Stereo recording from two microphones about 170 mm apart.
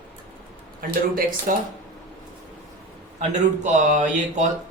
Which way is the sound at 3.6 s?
45° right (ahead or behind).